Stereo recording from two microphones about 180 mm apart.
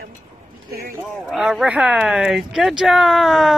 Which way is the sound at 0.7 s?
55° right (ahead or behind).